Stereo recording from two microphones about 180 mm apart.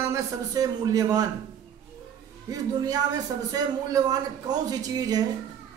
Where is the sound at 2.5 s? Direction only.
20° right (ahead or behind).